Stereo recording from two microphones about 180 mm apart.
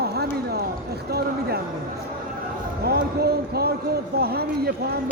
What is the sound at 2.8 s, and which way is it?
Speech, 60° right (ahead or behind).